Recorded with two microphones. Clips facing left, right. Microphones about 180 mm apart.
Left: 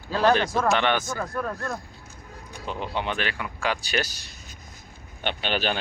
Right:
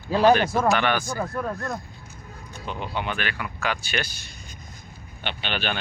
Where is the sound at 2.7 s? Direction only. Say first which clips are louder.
Left 1 dB; 35° left (ahead or behind).